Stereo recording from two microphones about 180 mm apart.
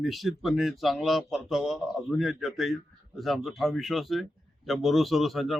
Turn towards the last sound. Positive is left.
turn(degrees=0)  # may be behind; listen again after turning